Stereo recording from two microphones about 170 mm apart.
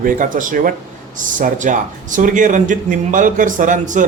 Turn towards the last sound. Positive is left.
turn(degrees=-50)  # may be behind; listen again after turning